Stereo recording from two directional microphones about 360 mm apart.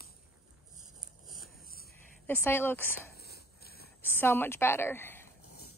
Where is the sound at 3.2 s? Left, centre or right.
Left.